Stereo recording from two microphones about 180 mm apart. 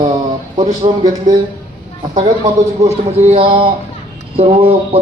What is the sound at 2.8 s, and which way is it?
A man's voice, 40° right (ahead or behind).